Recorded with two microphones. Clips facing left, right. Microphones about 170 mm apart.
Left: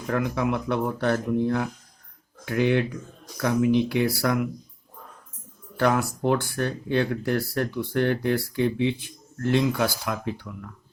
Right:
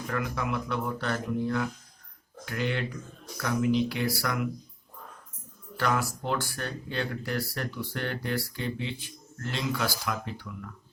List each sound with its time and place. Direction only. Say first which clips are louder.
0.1 s speech: left 7 dB; 55° left (ahead or behind)
6.0 s speech: left 7 dB; 55° left (ahead or behind)